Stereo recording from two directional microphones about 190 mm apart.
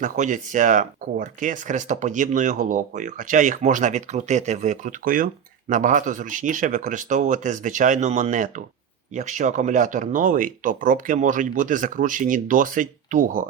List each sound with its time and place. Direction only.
0.0 s speech: 40° right (ahead or behind)